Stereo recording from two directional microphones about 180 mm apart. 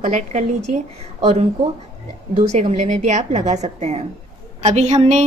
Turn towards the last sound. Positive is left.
turn(degrees=-40)  # may be behind; listen again after turning